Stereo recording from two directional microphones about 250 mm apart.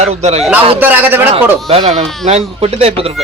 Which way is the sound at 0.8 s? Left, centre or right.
Centre.